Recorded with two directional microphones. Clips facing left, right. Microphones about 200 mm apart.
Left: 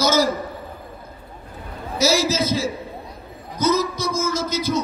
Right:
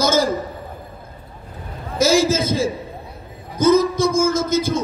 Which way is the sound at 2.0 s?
50° right (ahead or behind).